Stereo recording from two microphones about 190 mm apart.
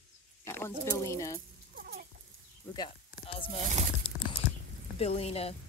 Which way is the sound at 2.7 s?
25° left (ahead or behind).